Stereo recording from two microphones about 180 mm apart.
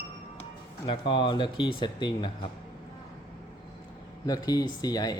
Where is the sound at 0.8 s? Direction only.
25° left (ahead or behind).